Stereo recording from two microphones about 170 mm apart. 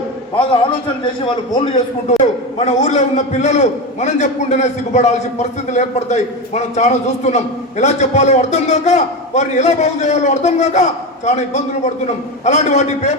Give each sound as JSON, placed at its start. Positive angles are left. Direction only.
{"t": 1.0, "sound": "a man's voice", "side_deg": 30}
{"t": 2.6, "sound": "a man's voice", "side_deg": 45}